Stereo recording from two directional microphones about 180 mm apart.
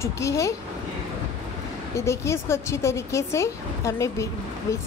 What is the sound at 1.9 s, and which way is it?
A woman's voice, 15° left (ahead or behind).